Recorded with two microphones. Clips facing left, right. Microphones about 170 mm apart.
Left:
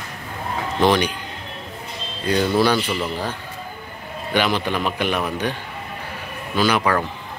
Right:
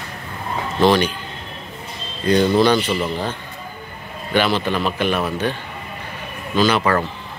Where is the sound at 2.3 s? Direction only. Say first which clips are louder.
Right 3 dB; 10° left (ahead or behind).